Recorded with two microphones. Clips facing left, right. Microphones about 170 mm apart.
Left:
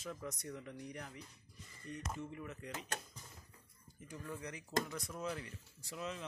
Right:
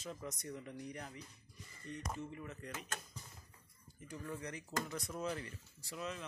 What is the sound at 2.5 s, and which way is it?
Speech, 10° left (ahead or behind).